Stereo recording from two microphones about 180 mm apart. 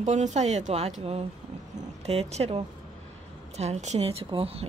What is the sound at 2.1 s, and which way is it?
A woman's voice, 35° right (ahead or behind).